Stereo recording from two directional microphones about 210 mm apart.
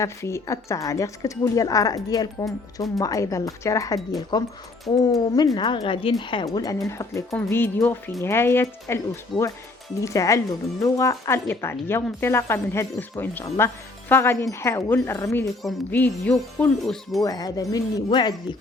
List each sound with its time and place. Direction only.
0.0 s speech: 15° left (ahead or behind)
5.5 s speech: 20° left (ahead or behind)
9.3 s speech: centre (ahead or behind)
10.0 s speech: 15° left (ahead or behind)
17.2 s speech: 15° left (ahead or behind)